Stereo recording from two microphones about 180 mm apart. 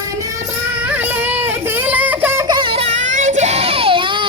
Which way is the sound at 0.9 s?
10° right (ahead or behind).